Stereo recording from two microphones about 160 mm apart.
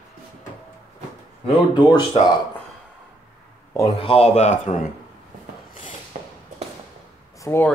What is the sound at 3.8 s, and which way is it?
Speech, 35° left (ahead or behind).